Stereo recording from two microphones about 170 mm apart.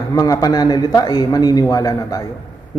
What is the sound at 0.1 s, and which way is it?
A man's voice, 20° left (ahead or behind).